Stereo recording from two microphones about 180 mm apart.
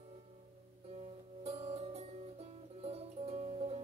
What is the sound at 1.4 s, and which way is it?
Music, 35° right (ahead or behind).